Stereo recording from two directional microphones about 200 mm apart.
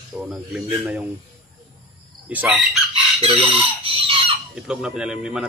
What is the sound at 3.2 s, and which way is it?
Chicken, 30° right (ahead or behind).